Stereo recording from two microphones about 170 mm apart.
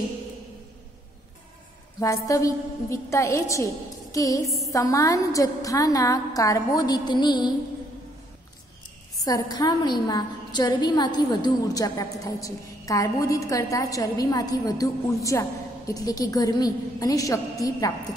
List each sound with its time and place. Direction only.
2.0 s a woman's voice: 20° left (ahead or behind)
9.2 s a woman's voice: 20° left (ahead or behind)